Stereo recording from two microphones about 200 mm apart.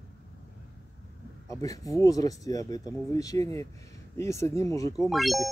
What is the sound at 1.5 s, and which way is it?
Speech, 15° left (ahead or behind).